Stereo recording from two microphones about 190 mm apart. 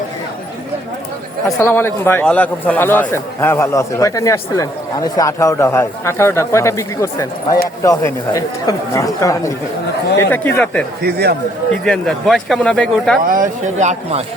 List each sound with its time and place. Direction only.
1.5 s a man's voice: 15° left (ahead or behind)
11.0 s a man's voice: 60° right (ahead or behind)
11.7 s speech: 5° left (ahead or behind)
13.2 s speech: 45° right (ahead or behind)